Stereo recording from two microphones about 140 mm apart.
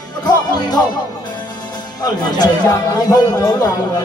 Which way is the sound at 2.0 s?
30° left (ahead or behind).